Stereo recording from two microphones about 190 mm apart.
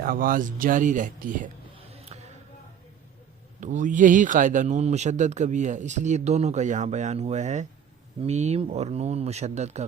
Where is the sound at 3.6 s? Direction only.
40° right (ahead or behind).